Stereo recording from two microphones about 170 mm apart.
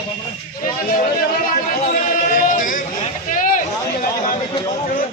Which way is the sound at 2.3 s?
50° left (ahead or behind).